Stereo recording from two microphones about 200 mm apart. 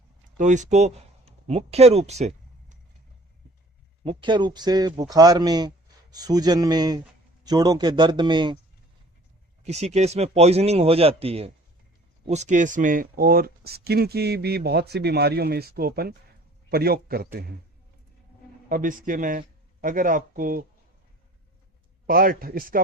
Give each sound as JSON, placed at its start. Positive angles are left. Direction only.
{"t": 0.3, "sound": "speech", "side_deg": -40}
{"t": 4.0, "sound": "speech", "side_deg": -25}
{"t": 9.6, "sound": "speech", "side_deg": -35}
{"t": 18.7, "sound": "speech", "side_deg": -40}
{"t": 22.0, "sound": "speech", "side_deg": -45}